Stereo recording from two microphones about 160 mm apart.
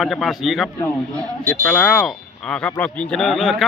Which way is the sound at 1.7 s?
5° left (ahead or behind).